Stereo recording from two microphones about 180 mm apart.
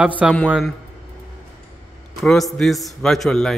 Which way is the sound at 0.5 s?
Centre (ahead or behind).